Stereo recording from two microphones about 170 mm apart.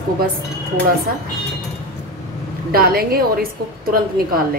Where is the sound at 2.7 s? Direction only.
60° right (ahead or behind).